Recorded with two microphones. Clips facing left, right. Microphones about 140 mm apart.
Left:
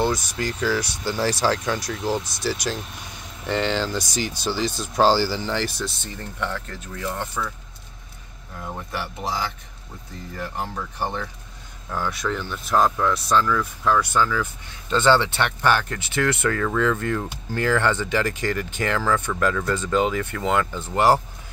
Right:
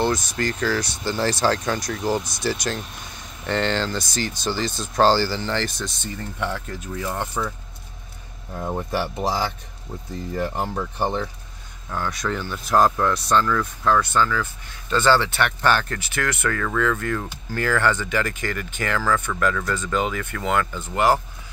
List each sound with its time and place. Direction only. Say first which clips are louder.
0.0 s speech: right 1 dB; 10° left (ahead or behind)
6.4 s speech: right 1 dB; 10° right (ahead or behind)
8.5 s speech: right 6 dB; 35° right (ahead or behind)
11.9 s speech: even; 5° left (ahead or behind)
14.9 s speech: even; 20° left (ahead or behind)